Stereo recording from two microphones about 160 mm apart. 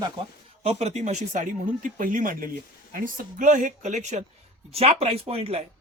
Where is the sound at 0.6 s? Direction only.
40° right (ahead or behind).